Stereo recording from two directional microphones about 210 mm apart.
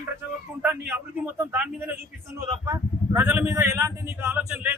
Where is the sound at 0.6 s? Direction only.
10° right (ahead or behind).